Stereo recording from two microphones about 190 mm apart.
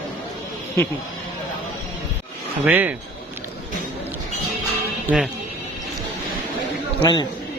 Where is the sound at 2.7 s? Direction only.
10° right (ahead or behind).